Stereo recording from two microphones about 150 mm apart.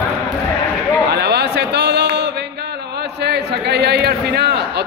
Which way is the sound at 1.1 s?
90° right.